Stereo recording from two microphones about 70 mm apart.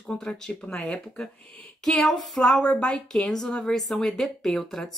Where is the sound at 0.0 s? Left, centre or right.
Centre.